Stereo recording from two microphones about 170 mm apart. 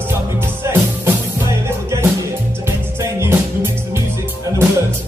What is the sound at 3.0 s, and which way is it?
Music, 15° right (ahead or behind).